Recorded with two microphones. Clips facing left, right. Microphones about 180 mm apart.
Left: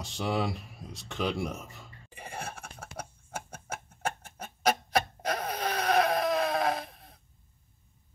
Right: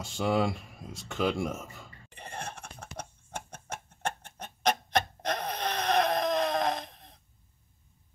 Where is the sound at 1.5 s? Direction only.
Centre (ahead or behind).